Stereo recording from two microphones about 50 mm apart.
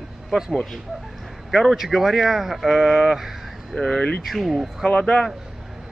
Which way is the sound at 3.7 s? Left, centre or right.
Centre.